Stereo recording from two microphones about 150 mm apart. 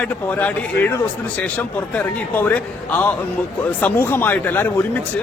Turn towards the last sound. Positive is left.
turn(degrees=15)  # may be behind; listen again after turning